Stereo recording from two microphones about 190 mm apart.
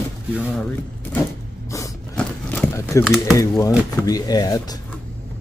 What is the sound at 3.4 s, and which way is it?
Speech, 20° left (ahead or behind).